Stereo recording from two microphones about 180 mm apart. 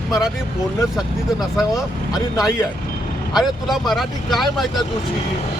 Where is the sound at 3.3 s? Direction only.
Centre (ahead or behind).